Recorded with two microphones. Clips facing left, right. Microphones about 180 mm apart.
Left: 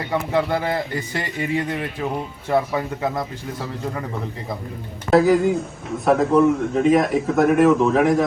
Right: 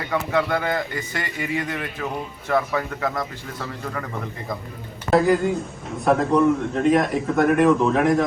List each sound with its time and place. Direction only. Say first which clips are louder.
0.0 s speech: left 1 dB; 30° left (ahead or behind)
5.1 s a man's voice: left 3 dB; centre (ahead or behind)